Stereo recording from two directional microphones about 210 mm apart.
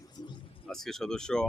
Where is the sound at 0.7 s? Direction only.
Centre (ahead or behind).